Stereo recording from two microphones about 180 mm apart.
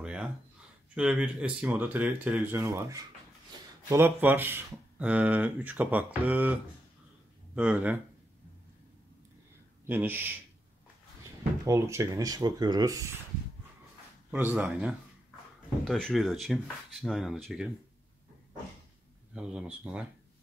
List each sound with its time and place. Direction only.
0.0 s a sound: 5° right (ahead or behind)
0.9 s speech: 5° right (ahead or behind)
9.8 s speech: 10° right (ahead or behind)
11.6 s speech: 15° right (ahead or behind)
14.3 s speech: 10° right (ahead or behind)
19.3 s speech: 5° right (ahead or behind)